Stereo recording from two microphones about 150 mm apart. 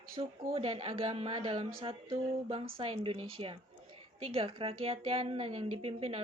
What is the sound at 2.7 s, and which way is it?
Speech, 35° right (ahead or behind).